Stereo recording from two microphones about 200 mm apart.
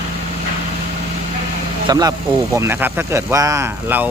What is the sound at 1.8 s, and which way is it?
Speech, 20° right (ahead or behind).